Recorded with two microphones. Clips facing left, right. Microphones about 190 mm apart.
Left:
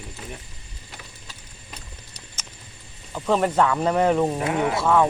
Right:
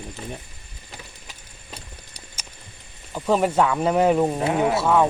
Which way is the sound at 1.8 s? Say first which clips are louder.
Right 1 dB; 10° right (ahead or behind).